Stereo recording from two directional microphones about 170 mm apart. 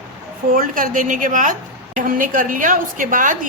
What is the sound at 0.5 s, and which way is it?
A woman's voice, 55° right (ahead or behind).